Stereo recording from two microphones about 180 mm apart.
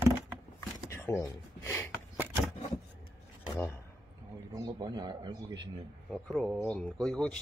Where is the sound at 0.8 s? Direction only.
15° left (ahead or behind).